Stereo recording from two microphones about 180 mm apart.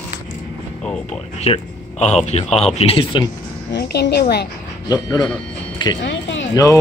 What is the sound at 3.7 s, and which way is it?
Speech, 65° left (ahead or behind).